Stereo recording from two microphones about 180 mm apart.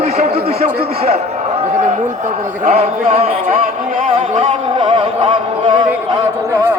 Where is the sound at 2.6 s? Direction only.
35° right (ahead or behind).